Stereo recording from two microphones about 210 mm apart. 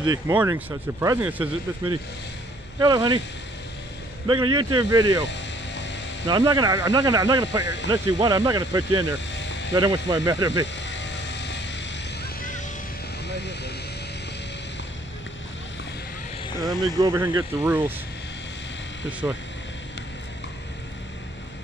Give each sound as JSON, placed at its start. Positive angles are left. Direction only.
{"t": 0.0, "sound": "speech", "side_deg": -20}
{"t": 2.8, "sound": "speech", "side_deg": -20}
{"t": 4.3, "sound": "speech", "side_deg": -20}
{"t": 5.2, "sound": "hum", "side_deg": 55}
{"t": 6.2, "sound": "speech", "side_deg": -20}
{"t": 7.6, "sound": "speech", "side_deg": 55}
{"t": 7.9, "sound": "speech", "side_deg": -15}
{"t": 9.3, "sound": "a sound", "side_deg": 60}
{"t": 9.8, "sound": "speech", "side_deg": -20}
{"t": 10.8, "sound": "vehicle", "side_deg": 60}
{"t": 16.6, "sound": "speech", "side_deg": -15}